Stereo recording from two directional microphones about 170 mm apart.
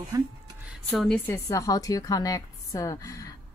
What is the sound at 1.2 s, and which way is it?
A woman's voice, 20° left (ahead or behind).